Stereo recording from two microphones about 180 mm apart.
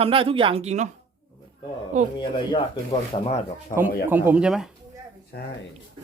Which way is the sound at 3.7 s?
45° left (ahead or behind).